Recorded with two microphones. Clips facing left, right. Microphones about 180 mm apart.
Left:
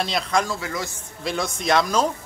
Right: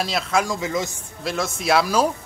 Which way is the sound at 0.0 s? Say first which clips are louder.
Right 1 dB; centre (ahead or behind).